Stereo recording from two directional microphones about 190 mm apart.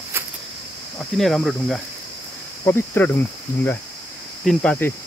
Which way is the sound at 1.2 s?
Centre (ahead or behind).